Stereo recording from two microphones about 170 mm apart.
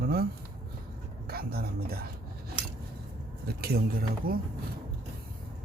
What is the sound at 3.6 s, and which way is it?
Speech, 65° right (ahead or behind).